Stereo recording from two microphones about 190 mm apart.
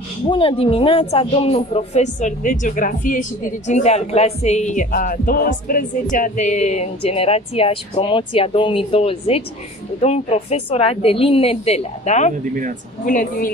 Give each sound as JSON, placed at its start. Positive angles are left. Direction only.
{"t": 0.3, "sound": "a woman's voice", "side_deg": 30}